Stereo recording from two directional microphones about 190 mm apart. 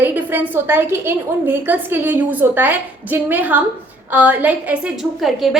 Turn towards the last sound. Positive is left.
turn(degrees=0)  # may be behind; listen again after turning